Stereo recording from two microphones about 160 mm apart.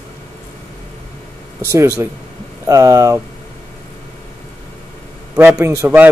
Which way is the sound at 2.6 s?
20° right (ahead or behind).